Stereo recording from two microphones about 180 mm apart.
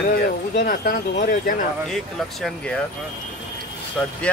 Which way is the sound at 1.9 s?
Centre (ahead or behind).